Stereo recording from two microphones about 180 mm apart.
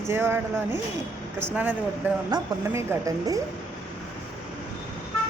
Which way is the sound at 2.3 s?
15° right (ahead or behind).